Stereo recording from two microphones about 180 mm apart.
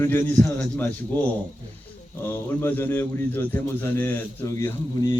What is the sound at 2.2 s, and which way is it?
A man's voice, 10° left (ahead or behind).